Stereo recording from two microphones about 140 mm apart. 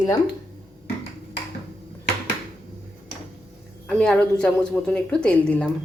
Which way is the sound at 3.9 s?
10° left (ahead or behind).